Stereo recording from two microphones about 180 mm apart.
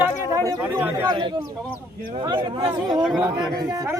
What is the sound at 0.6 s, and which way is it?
Speech, 10° right (ahead or behind).